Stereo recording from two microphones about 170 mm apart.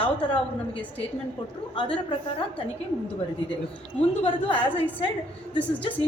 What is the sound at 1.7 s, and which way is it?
Speech, 30° left (ahead or behind).